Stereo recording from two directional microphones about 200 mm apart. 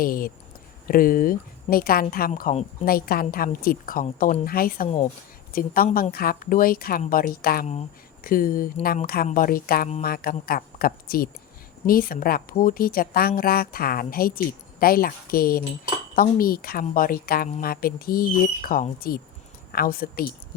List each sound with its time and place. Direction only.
0.0 s a woman's voice: 45° left (ahead or behind)